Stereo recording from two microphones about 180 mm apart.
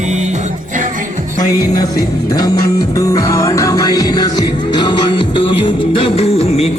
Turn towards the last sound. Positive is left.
turn(degrees=35)  # may be behind; listen again after turning